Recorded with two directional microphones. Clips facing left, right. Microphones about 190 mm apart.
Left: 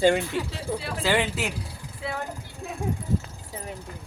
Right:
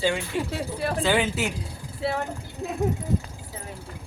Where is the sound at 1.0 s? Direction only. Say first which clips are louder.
Even; centre (ahead or behind).